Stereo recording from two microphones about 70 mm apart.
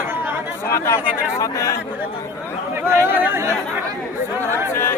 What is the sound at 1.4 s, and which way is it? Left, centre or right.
Speech, left.